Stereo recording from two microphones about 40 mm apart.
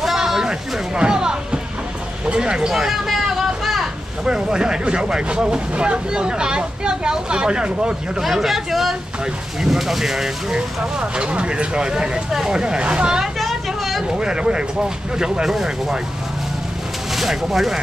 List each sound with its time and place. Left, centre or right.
0.0 s music: centre
2.2 s a sound: right
2.7 s speech: centre
3.3 s a sound: centre
4.2 s speech: centre
8.2 s speech: centre
10.5 s speech: right
13.4 s vehicle: centre
14.1 s speech: right
17.1 s speech: centre